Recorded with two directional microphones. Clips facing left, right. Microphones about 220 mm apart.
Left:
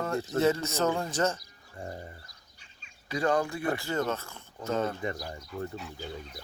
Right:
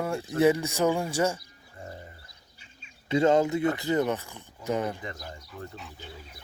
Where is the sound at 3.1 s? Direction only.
25° right (ahead or behind).